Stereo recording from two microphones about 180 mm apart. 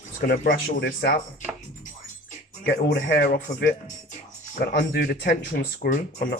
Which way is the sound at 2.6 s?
60° left (ahead or behind).